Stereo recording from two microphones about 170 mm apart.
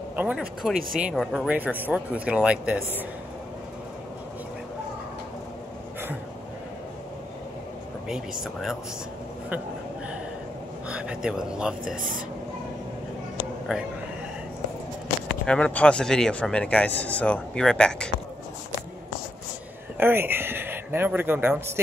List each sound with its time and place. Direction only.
0.1 s a man's voice: 10° right (ahead or behind)
1.5 s speech: 10° right (ahead or behind)
8.1 s a man's voice: centre (ahead or behind)
10.9 s a sound: 5° right (ahead or behind)
11.8 s speech: 55° right (ahead or behind)
13.7 s a man's voice: 5° right (ahead or behind)
15.4 s a man's voice: 5° left (ahead or behind)
20.0 s speech: 10° right (ahead or behind)